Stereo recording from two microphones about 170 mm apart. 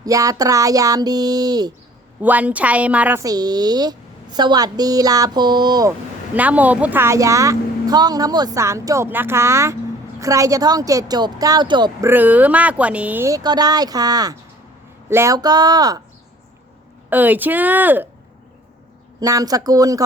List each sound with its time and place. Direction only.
0.0 s a woman's voice: 20° right (ahead or behind)
2.2 s a woman's voice: 10° right (ahead or behind); by 5.9 s 25° right (ahead or behind)
6.3 s a woman's voice: 10° right (ahead or behind); by 12.0 s 25° right (ahead or behind)
12.0 s a woman's voice: 10° right (ahead or behind)
17.1 s speech: 10° right (ahead or behind)
19.2 s a woman's voice: 20° right (ahead or behind)